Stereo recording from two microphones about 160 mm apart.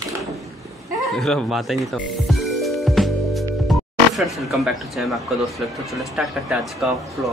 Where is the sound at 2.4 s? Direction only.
Centre (ahead or behind).